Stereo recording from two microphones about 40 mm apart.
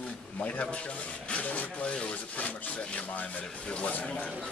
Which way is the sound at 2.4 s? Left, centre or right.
Left.